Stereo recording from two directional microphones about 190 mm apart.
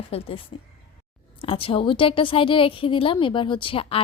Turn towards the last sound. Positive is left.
turn(degrees=30)  # may be behind; listen again after turning